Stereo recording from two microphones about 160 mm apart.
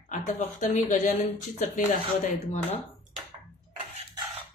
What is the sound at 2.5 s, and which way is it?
Speech, 40° left (ahead or behind).